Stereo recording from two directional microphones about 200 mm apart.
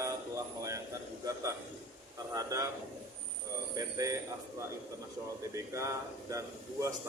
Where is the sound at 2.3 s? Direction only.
15° right (ahead or behind).